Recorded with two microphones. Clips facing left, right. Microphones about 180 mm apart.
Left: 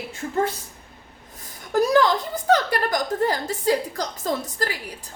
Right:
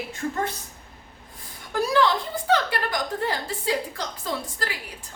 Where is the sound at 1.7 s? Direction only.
40° left (ahead or behind).